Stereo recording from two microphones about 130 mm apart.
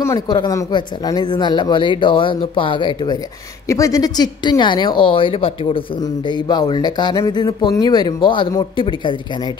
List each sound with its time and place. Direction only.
0.0 s speech: 25° left (ahead or behind)
3.6 s speech: 25° left (ahead or behind)